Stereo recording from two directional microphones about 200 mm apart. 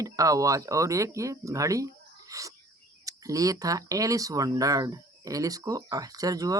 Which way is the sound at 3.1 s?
15° right (ahead or behind).